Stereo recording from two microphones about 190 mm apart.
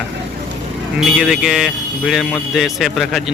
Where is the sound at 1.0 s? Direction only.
Centre (ahead or behind).